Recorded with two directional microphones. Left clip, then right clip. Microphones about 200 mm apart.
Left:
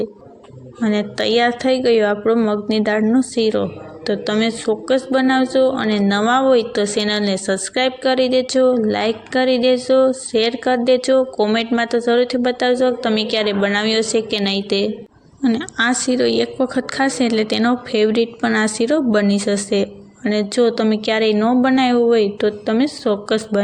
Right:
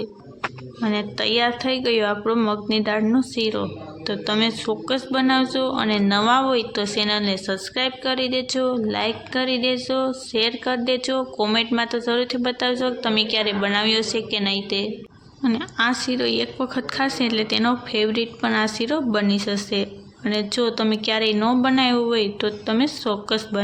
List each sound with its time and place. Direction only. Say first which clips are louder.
0.8 s a woman's voice: left 5 dB; 20° left (ahead or behind)